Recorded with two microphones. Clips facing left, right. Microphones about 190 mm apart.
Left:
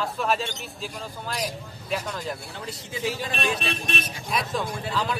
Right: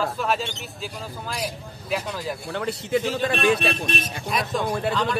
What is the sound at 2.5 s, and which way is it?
A man's voice, 65° right (ahead or behind).